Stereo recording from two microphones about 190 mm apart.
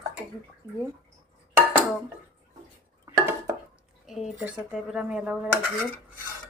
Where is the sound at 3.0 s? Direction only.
15° right (ahead or behind).